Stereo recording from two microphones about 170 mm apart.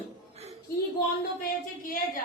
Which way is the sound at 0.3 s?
40° right (ahead or behind).